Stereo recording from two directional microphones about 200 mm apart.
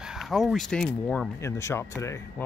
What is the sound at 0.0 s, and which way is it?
Speech, centre (ahead or behind).